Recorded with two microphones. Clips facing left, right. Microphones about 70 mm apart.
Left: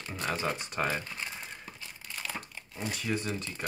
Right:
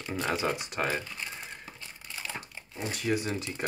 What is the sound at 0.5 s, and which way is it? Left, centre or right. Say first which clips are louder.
Speech: right 1 dB; centre.